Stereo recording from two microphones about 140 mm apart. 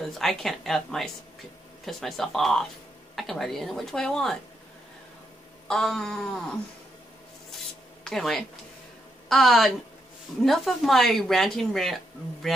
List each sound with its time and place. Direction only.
0.0 s speech: centre (ahead or behind)
5.7 s speech: 5° left (ahead or behind)
7.5 s a sound: centre (ahead or behind)
9.3 s speech: centre (ahead or behind)